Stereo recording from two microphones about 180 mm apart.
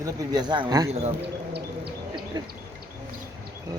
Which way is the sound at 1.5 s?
60° right (ahead or behind).